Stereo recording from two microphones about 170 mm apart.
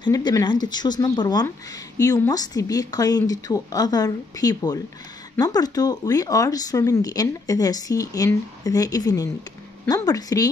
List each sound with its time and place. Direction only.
0.0 s speech: 25° left (ahead or behind)